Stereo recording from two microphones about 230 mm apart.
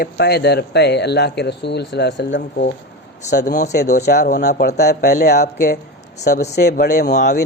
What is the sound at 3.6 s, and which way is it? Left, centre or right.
Speech, left.